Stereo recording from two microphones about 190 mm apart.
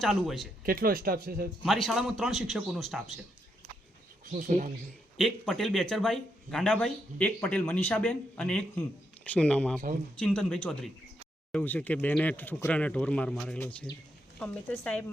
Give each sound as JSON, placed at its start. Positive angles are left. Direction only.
{"t": 0.0, "sound": "speech", "side_deg": 0}
{"t": 0.6, "sound": "speech", "side_deg": -50}
{"t": 1.6, "sound": "speech", "side_deg": 0}
{"t": 4.3, "sound": "speech", "side_deg": -40}
{"t": 5.1, "sound": "speech", "side_deg": 0}